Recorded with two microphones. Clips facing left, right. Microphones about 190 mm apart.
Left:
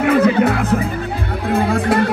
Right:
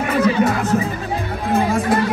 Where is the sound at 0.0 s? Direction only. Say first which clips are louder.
Left 3 dB; 60° left (ahead or behind).